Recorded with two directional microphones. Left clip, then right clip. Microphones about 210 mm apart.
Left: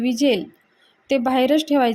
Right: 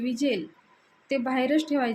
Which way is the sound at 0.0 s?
35° left (ahead or behind).